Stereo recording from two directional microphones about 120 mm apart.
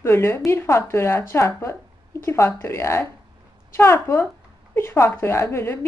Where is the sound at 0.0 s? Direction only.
20° left (ahead or behind).